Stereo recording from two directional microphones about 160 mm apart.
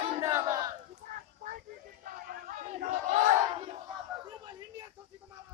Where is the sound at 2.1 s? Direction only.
60° right (ahead or behind).